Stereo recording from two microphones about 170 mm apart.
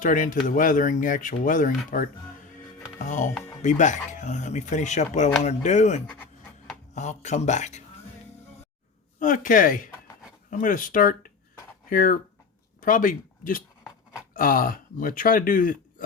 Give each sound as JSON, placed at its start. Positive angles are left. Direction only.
{"t": 0.0, "sound": "speech", "side_deg": 50}
{"t": 3.1, "sound": "speech", "side_deg": 45}
{"t": 9.1, "sound": "speech", "side_deg": 50}